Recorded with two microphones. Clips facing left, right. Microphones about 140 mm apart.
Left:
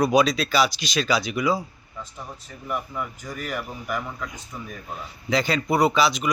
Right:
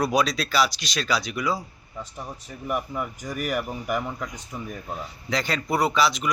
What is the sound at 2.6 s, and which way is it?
A man's voice, 15° right (ahead or behind).